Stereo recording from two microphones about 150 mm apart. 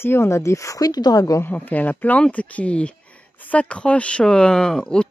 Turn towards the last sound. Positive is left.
turn(degrees=5)  # may be behind; listen again after turning